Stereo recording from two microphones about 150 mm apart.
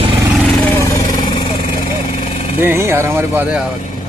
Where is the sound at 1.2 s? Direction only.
30° left (ahead or behind).